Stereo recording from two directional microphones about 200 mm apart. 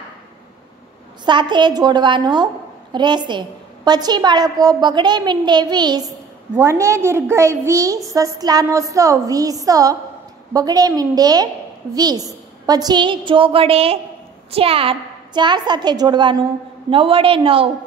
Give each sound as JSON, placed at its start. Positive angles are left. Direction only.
{"t": 1.2, "sound": "a woman's voice", "side_deg": -20}